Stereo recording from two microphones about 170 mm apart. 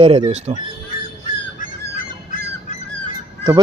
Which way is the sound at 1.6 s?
55° left (ahead or behind).